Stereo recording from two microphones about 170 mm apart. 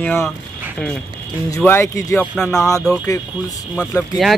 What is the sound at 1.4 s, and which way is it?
Speech, 15° left (ahead or behind).